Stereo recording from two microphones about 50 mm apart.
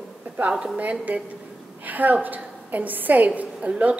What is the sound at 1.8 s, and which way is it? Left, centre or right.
A woman's voice, right.